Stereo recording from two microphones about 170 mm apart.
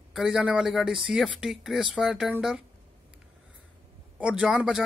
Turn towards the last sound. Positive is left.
turn(degrees=-5)  # may be behind; listen again after turning